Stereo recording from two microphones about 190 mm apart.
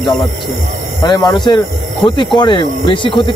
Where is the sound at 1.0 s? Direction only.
20° left (ahead or behind).